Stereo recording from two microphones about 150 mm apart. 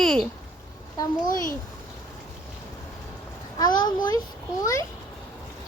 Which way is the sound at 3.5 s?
25° left (ahead or behind).